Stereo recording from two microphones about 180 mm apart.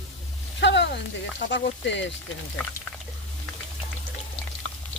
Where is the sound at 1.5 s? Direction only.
80° left.